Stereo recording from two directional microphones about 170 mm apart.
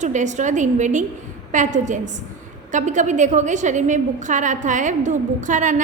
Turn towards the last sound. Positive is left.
turn(degrees=-45)  # may be behind; listen again after turning